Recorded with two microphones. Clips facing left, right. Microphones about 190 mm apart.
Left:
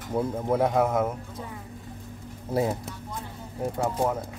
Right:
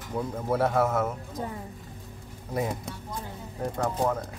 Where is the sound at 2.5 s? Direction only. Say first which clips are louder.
Left 4 dB; 25° left (ahead or behind).